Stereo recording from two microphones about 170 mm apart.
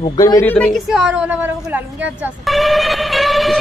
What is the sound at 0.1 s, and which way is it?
Speech, 20° left (ahead or behind).